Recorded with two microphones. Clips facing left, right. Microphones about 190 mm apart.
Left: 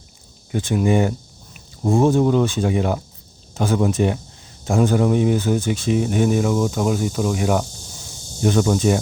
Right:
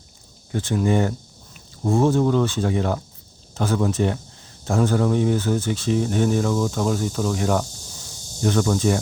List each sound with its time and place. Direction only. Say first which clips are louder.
0.5 s speech: left 2 dB; 15° left (ahead or behind)